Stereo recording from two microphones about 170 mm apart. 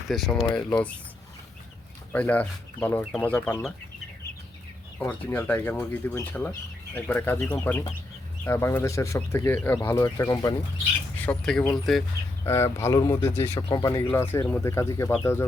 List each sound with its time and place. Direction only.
0.1 s speech: centre (ahead or behind)
2.1 s speech: 10° left (ahead or behind)
4.9 s speech: 10° left (ahead or behind)
11.3 s speech: 5° left (ahead or behind)
12.5 s speech: 15° left (ahead or behind)